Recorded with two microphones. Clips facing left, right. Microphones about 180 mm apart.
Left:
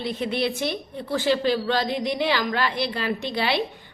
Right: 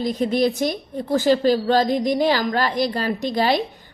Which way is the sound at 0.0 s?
40° right (ahead or behind).